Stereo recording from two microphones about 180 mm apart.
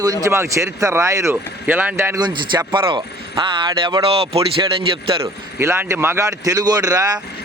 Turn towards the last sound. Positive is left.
turn(degrees=-20)  # may be behind; listen again after turning